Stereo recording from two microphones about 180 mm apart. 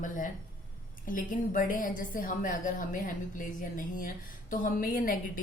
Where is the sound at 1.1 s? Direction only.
50° left (ahead or behind).